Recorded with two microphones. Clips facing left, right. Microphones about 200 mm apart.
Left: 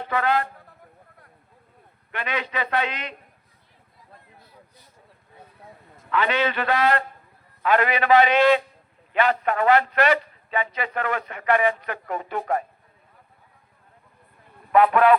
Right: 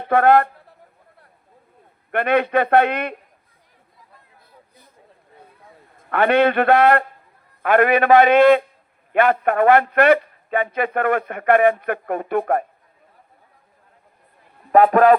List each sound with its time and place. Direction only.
0.0 s speech: 60° right (ahead or behind)
2.1 s speech: 60° right (ahead or behind)
6.0 s speech: 60° right (ahead or behind)
14.7 s speech: 45° right (ahead or behind)